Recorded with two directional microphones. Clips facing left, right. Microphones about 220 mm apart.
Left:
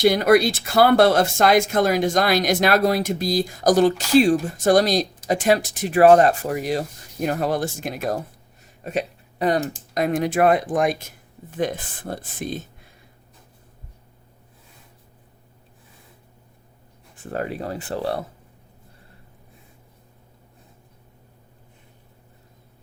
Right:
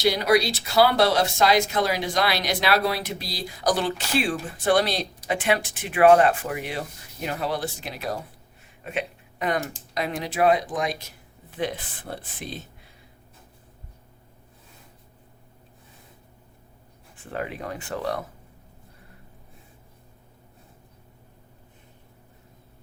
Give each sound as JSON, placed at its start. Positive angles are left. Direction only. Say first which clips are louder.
{"t": 0.0, "sound": "speech", "louder": "left 5 dB", "side_deg": 50}
{"t": 17.3, "sound": "speech", "louder": "left 4 dB", "side_deg": 40}